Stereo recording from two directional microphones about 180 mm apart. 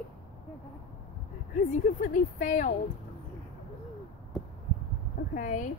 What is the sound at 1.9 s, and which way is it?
Speech, 45° left (ahead or behind).